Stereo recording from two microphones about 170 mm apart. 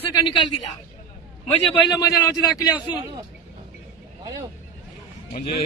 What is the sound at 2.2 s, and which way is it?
Speech, 20° left (ahead or behind).